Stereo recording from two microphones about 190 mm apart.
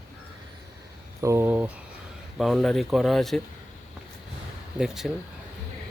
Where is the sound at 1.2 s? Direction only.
15° right (ahead or behind).